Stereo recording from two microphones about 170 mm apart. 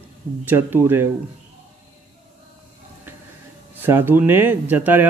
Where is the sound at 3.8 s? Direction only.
15° right (ahead or behind).